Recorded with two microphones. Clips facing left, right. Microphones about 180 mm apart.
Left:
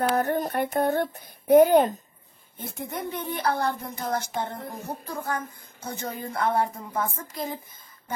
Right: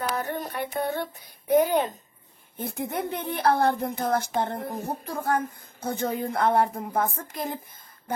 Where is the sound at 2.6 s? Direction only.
60° right (ahead or behind).